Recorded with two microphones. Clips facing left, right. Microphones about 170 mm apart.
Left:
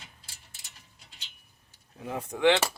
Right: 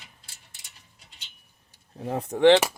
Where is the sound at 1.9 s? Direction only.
35° right (ahead or behind).